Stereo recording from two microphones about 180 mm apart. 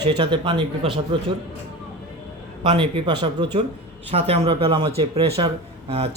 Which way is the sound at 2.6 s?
30° right (ahead or behind).